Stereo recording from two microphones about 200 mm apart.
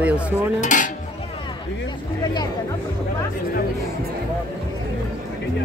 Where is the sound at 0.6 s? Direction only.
40° left (ahead or behind).